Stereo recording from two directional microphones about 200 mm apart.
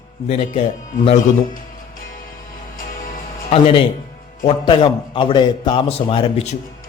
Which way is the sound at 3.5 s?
25° left (ahead or behind).